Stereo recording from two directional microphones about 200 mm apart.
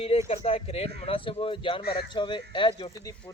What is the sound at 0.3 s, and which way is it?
A man's voice, 30° left (ahead or behind).